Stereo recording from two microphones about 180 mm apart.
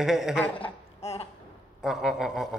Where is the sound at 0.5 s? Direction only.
35° left (ahead or behind).